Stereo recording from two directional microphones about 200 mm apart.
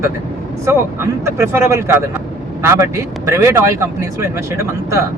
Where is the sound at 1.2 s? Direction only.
15° right (ahead or behind).